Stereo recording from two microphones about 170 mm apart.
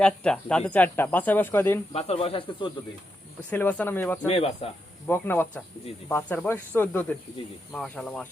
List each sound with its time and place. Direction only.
0.0 s speech: 5° left (ahead or behind)
1.9 s speech: 35° left (ahead or behind)
3.5 s speech: 10° left (ahead or behind)
4.3 s speech: 35° left (ahead or behind)
5.0 s speech: 10° left (ahead or behind)